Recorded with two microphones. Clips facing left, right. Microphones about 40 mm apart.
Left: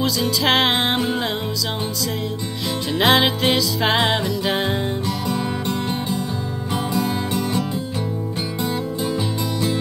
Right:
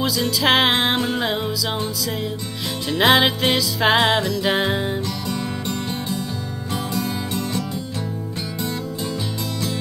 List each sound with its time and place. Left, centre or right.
0.0 s music: centre
2.9 s music: centre
5.3 s music: centre